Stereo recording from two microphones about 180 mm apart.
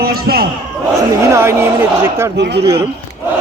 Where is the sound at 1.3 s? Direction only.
15° right (ahead or behind).